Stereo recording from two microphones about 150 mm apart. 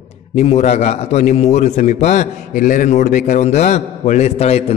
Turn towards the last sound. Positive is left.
turn(degrees=45)  # may be behind; listen again after turning